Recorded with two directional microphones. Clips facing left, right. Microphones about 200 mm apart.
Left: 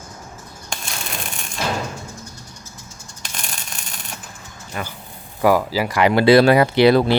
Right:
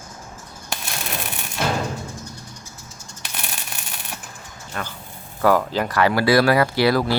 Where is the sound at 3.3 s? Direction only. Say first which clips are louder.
Even; 5° right (ahead or behind).